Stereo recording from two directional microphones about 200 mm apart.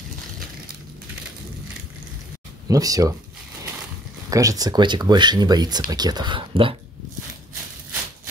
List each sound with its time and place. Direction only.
2.7 s speech: 15° right (ahead or behind)
4.3 s speech: 15° right (ahead or behind)